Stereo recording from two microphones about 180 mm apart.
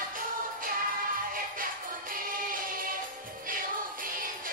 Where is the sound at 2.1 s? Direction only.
50° right (ahead or behind).